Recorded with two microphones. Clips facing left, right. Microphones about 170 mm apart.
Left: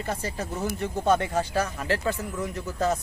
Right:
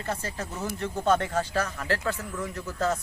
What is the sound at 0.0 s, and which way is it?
Speech, 15° left (ahead or behind).